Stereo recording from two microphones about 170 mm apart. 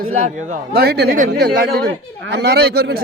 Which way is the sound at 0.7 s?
70° right (ahead or behind).